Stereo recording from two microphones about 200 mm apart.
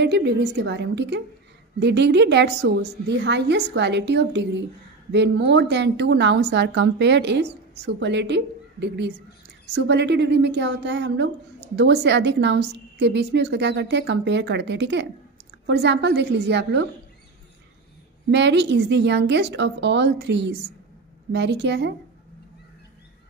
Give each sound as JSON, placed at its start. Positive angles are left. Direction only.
{"t": 0.0, "sound": "a woman's voice", "side_deg": -55}
{"t": 18.3, "sound": "a woman's voice", "side_deg": -60}